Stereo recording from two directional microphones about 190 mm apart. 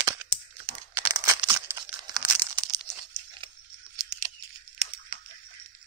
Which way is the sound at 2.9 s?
Centre (ahead or behind).